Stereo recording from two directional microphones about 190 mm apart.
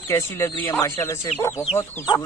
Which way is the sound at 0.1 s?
15° left (ahead or behind).